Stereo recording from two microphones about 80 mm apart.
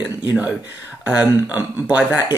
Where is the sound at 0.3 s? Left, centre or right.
Centre.